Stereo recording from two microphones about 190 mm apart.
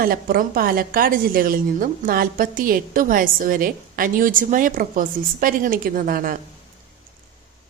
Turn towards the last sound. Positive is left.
turn(degrees=-50)  # may be behind; listen again after turning